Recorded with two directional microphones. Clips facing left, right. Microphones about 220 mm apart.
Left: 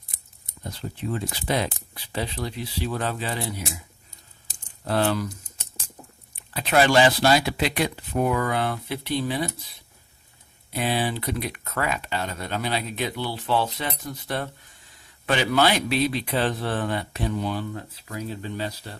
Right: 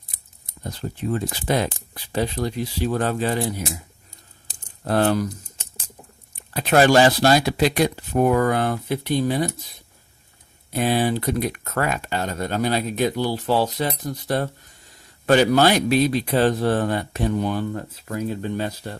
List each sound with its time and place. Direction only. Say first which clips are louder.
0.7 s speech: right 4 dB; 45° right (ahead or behind)
4.9 s speech: right 4 dB; 50° right (ahead or behind)
6.3 s speech: right 3 dB; 45° right (ahead or behind)
10.7 s speech: right 5 dB; 45° right (ahead or behind)